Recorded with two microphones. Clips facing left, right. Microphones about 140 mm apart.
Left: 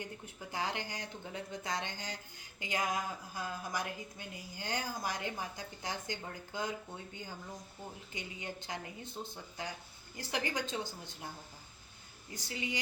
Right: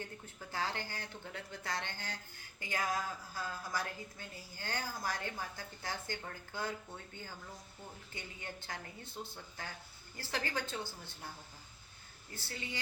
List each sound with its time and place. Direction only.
0.0 s speech: 15° left (ahead or behind)
12.3 s speech: 15° left (ahead or behind)